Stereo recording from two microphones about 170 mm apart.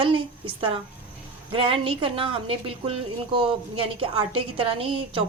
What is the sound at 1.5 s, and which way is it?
A woman's voice, 30° right (ahead or behind).